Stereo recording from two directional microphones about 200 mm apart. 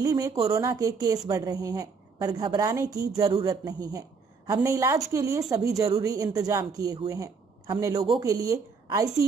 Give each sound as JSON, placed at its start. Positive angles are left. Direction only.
{"t": 0.0, "sound": "a woman's voice", "side_deg": -15}